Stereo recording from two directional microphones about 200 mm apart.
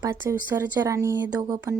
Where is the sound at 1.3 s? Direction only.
20° right (ahead or behind).